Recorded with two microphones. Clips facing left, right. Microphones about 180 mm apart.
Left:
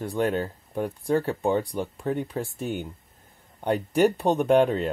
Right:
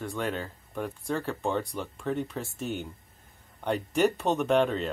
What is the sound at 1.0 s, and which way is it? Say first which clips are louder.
Speech: left 7 dB; 15° left (ahead or behind).